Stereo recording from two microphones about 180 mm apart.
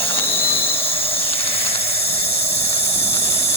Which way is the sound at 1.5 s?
30° left (ahead or behind).